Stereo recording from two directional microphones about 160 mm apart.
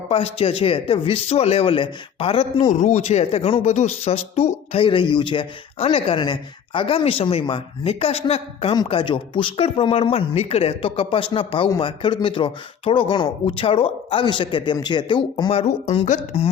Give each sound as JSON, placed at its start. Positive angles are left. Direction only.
{"t": 0.1, "sound": "speech", "side_deg": 35}
{"t": 8.7, "sound": "speech", "side_deg": 30}